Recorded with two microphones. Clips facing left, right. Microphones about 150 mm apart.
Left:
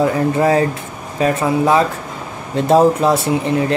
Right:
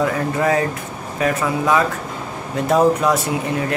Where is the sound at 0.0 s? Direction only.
30° left (ahead or behind).